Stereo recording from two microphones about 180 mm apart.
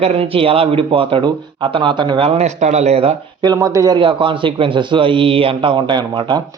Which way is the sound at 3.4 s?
20° right (ahead or behind).